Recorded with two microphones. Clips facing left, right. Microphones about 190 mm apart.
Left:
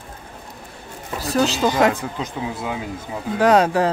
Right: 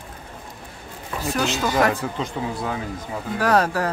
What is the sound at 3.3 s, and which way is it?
Speech, 20° left (ahead or behind).